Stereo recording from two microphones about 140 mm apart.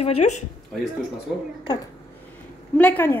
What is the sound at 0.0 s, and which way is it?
Speech, 50° left (ahead or behind).